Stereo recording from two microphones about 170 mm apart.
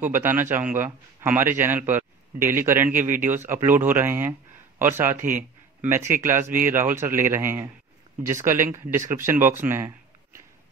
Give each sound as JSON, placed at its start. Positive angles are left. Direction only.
{"t": 0.0, "sound": "a man's voice", "side_deg": -10}
{"t": 3.0, "sound": "speech", "side_deg": -50}
{"t": 3.3, "sound": "a man's voice", "side_deg": -15}